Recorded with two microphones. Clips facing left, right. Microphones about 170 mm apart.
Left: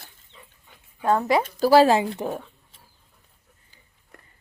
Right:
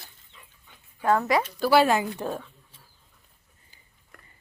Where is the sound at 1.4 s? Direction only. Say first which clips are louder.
Left 6 dB; 40° left (ahead or behind); by 2.4 s 20° left (ahead or behind).